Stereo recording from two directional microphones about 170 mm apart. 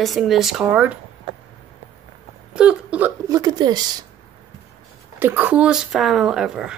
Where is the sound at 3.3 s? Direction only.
25° right (ahead or behind).